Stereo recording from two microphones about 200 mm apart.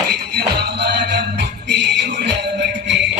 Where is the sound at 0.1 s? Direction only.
55° right (ahead or behind).